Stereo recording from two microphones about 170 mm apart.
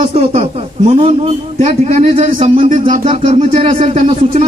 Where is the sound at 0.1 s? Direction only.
40° right (ahead or behind).